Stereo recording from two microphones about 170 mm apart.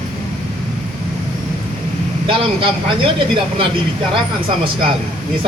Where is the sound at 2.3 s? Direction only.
30° right (ahead or behind).